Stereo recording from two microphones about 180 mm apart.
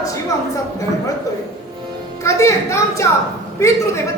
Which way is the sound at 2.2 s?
15° left (ahead or behind).